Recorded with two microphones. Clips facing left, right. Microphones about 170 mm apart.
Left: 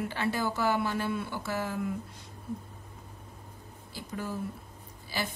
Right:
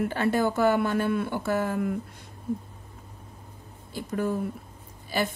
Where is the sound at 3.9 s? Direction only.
55° right (ahead or behind).